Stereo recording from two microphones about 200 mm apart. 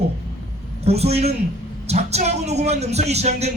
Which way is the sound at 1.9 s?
30° right (ahead or behind).